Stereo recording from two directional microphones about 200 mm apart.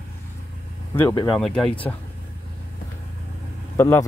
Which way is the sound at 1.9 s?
15° left (ahead or behind).